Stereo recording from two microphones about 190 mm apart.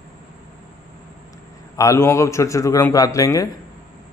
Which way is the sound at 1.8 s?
15° left (ahead or behind).